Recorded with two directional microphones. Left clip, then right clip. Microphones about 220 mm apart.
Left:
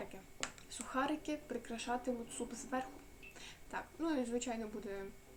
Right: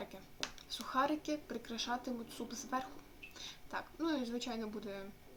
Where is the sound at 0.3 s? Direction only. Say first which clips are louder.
Right 3 dB; 20° right (ahead or behind).